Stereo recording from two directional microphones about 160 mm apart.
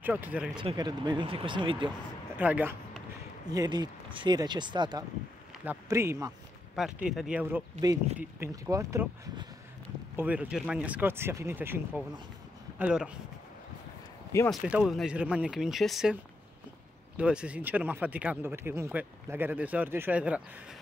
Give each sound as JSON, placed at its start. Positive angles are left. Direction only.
{"t": 0.0, "sound": "speech", "side_deg": -10}
{"t": 0.6, "sound": "speech", "side_deg": -30}
{"t": 2.3, "sound": "speech", "side_deg": -10}
{"t": 3.4, "sound": "speech", "side_deg": -25}
{"t": 5.7, "sound": "speech", "side_deg": -15}
{"t": 6.7, "sound": "speech", "side_deg": -5}
{"t": 8.2, "sound": "speech", "side_deg": -15}
{"t": 14.5, "sound": "speech", "side_deg": -5}
{"t": 17.2, "sound": "speech", "side_deg": -5}